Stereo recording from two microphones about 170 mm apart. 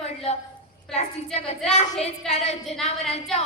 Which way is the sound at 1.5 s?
Centre (ahead or behind).